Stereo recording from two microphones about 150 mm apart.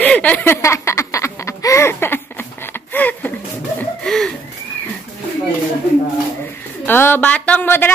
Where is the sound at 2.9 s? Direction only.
10° left (ahead or behind).